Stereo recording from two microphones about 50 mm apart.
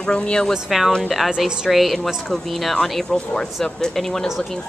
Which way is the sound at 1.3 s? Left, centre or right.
Centre.